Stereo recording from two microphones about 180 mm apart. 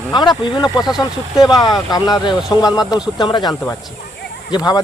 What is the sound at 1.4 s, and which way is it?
Speech, 20° left (ahead or behind).